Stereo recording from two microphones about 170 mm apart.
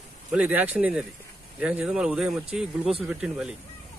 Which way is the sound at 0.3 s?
10° right (ahead or behind).